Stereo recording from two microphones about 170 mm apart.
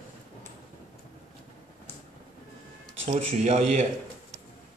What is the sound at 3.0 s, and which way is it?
Speech, 40° right (ahead or behind).